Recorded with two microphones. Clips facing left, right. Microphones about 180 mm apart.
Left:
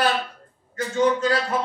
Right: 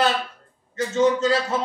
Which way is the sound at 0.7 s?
25° right (ahead or behind).